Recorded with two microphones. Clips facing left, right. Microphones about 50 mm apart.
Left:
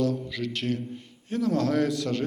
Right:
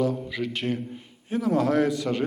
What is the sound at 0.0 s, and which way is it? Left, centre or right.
A man's voice, centre.